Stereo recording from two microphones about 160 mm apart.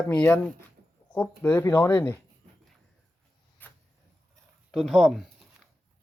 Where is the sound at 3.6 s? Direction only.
10° left (ahead or behind).